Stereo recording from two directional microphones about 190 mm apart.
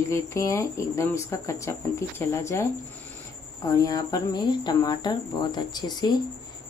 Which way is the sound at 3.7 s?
20° left (ahead or behind).